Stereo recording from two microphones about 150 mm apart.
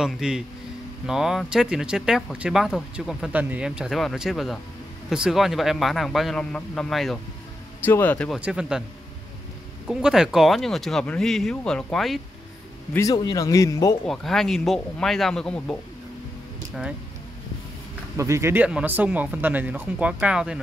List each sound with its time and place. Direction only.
0.0 s speech: 5° right (ahead or behind)
7.8 s speech: 10° left (ahead or behind)
8.3 s speech: 5° right (ahead or behind)
9.8 s speech: 5° right (ahead or behind)
12.9 s speech: 25° left (ahead or behind)
14.0 s speech: centre (ahead or behind)
18.1 s speech: 20° right (ahead or behind)